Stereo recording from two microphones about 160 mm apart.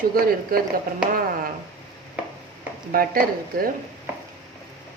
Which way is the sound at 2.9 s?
65° right (ahead or behind).